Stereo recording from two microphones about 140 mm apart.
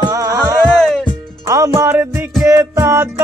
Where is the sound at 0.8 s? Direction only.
5° left (ahead or behind).